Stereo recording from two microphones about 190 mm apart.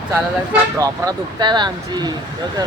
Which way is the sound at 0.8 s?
20° right (ahead or behind).